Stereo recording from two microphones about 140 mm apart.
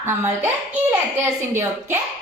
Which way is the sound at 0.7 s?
15° right (ahead or behind).